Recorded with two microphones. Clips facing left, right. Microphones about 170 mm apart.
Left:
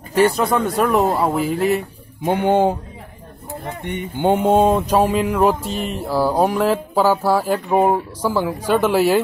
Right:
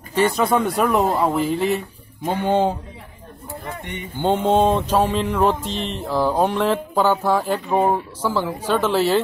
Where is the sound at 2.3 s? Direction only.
15° left (ahead or behind).